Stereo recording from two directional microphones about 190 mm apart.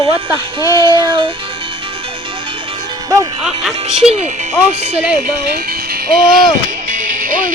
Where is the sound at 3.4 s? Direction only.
5° right (ahead or behind).